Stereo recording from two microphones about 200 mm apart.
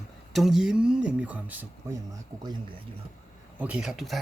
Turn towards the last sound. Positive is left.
turn(degrees=0)  # may be behind; listen again after turning